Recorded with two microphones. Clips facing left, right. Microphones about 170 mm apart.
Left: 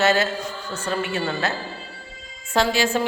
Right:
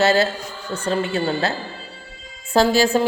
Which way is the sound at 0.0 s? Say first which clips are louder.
Right 3 dB; 35° right (ahead or behind).